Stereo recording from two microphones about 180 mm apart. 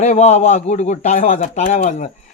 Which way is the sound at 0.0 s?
40° left (ahead or behind).